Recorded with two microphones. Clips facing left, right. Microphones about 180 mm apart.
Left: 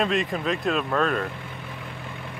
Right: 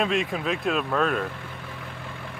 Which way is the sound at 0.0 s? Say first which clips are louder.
Left 1 dB; centre (ahead or behind).